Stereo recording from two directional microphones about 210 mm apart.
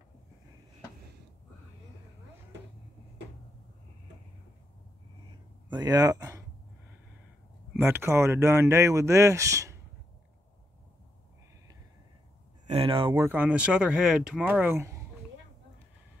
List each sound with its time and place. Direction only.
5.7 s speech: 20° right (ahead or behind)
7.7 s speech: 10° right (ahead or behind)
12.6 s speech: 25° right (ahead or behind)
13.2 s speech: 10° right (ahead or behind)